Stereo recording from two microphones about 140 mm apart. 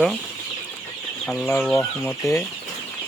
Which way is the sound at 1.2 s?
5° left (ahead or behind).